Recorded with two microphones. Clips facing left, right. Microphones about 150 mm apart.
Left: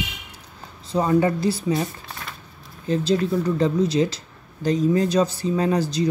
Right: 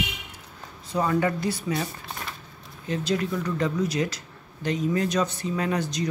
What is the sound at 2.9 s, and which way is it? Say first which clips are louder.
Speech: left 6 dB; 30° left (ahead or behind).